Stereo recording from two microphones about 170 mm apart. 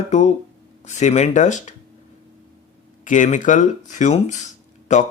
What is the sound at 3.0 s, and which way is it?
A man's voice, 45° left (ahead or behind).